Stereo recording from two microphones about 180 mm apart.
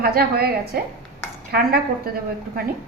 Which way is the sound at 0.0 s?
60° right (ahead or behind).